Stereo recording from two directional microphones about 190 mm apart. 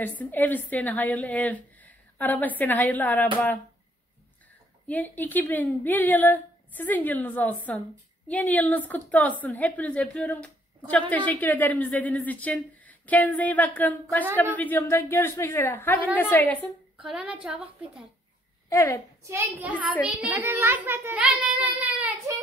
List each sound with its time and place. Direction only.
0.0 s a woman's voice: 10° left (ahead or behind)
4.8 s a woman's voice: 10° left (ahead or behind)
16.9 s a woman's voice: 5° right (ahead or behind)
18.7 s a child's voice: 15° left (ahead or behind)
19.2 s a child's voice: 10° right (ahead or behind)